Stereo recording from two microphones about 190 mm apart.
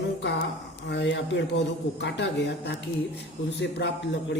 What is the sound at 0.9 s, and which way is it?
A woman's voice, 70° left (ahead or behind).